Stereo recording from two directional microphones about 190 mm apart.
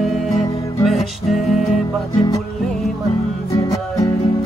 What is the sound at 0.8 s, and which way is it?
Music, centre (ahead or behind).